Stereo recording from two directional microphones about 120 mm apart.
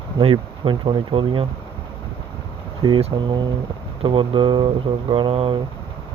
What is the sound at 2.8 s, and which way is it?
Speech, 40° right (ahead or behind).